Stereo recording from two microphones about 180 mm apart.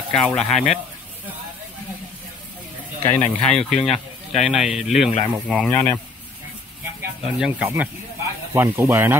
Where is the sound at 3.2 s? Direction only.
5° left (ahead or behind).